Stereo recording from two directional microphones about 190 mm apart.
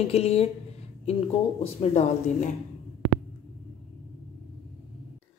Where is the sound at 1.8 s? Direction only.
35° left (ahead or behind).